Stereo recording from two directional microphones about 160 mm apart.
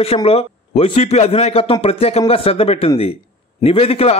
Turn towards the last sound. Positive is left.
turn(degrees=40)  # may be behind; listen again after turning